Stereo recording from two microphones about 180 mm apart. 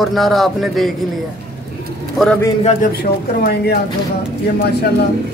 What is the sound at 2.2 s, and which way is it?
Speech, centre (ahead or behind).